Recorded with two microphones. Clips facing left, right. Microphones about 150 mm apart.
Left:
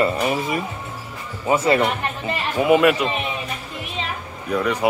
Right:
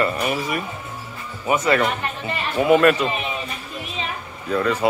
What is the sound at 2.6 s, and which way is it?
Speech, 10° left (ahead or behind).